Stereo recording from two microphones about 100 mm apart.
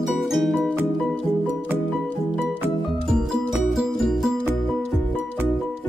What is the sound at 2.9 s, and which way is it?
Music, centre (ahead or behind).